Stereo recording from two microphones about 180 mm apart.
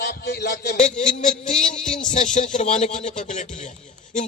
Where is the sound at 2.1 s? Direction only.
45° left (ahead or behind).